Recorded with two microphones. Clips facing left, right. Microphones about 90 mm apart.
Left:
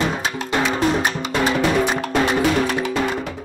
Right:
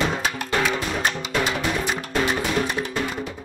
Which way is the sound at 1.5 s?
90° left.